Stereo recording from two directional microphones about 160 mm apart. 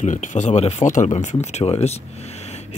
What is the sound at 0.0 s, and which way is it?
Speech, 50° left (ahead or behind).